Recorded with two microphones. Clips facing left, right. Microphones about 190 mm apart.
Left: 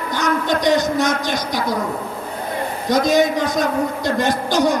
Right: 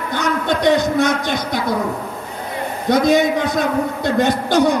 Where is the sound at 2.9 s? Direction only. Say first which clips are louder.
Right 2 dB; 55° right (ahead or behind).